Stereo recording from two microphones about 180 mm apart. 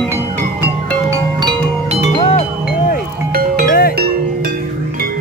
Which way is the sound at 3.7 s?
55° left (ahead or behind).